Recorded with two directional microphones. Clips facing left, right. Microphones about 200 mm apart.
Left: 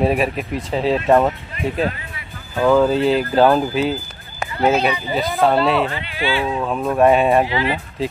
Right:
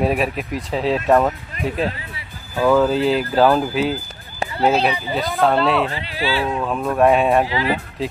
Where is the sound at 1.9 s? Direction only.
30° right (ahead or behind).